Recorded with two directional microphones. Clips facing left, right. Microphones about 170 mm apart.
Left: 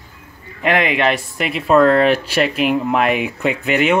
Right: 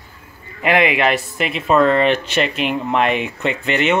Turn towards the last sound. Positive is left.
turn(degrees=5)  # may be behind; listen again after turning